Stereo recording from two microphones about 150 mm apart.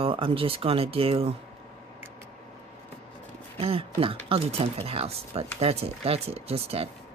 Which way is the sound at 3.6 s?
40° right (ahead or behind).